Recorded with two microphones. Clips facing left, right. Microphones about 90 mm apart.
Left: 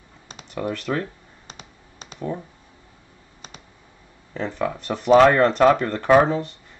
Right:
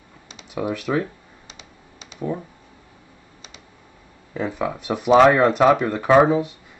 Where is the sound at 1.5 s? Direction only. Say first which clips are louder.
Left 3 dB; 45° left (ahead or behind).